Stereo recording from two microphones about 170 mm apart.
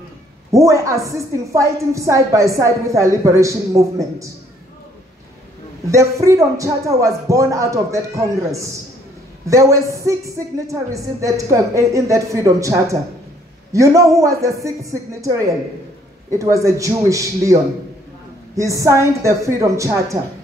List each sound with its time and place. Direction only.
0.5 s a woman's voice: 20° right (ahead or behind)
5.9 s a woman's voice: 20° right (ahead or behind)
18.6 s a woman's voice: 20° right (ahead or behind)